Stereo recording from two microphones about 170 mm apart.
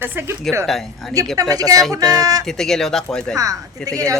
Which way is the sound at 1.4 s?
20° right (ahead or behind).